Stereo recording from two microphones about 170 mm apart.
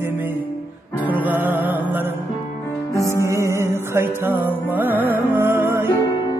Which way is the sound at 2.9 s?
20° left (ahead or behind).